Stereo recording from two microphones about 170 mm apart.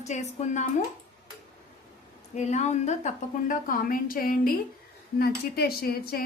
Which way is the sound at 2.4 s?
40° left (ahead or behind).